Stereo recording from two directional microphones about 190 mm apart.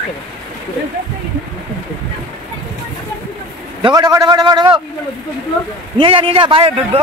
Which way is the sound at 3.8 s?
20° right (ahead or behind).